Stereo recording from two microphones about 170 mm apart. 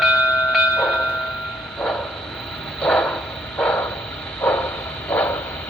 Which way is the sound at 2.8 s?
5° left (ahead or behind).